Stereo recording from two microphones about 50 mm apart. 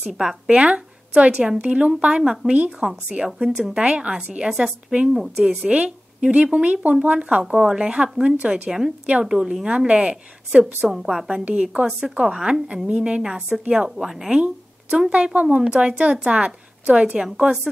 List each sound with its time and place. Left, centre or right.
0.0 s a woman's voice: centre
0.5 s speech: right
2.8 s a woman's voice: centre
3.8 s a woman's voice: right; by 5.7 s centre
5.7 s a woman's voice: right
8.6 s a woman's voice: centre
10.9 s a woman's voice: centre
11.4 s speech: right
13.7 s a woman's voice: centre
14.3 s a sound: right
15.0 s speech: right
15.6 s a woman's voice: centre